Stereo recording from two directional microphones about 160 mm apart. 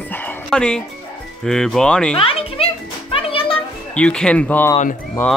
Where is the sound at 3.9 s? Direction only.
5° left (ahead or behind).